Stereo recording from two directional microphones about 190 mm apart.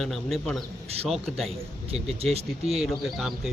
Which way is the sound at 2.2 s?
30° right (ahead or behind).